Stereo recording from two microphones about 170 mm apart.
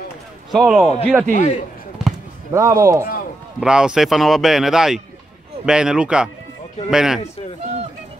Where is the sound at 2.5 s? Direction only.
20° right (ahead or behind).